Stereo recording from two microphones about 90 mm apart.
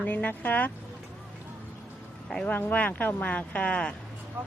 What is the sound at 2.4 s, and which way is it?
Speech, 20° left (ahead or behind).